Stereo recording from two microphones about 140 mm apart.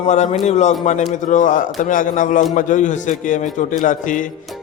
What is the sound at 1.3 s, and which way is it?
A man's voice, 65° left (ahead or behind).